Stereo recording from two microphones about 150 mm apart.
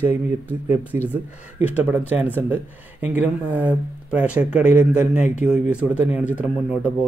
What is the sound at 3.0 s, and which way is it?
Speech, 10° right (ahead or behind).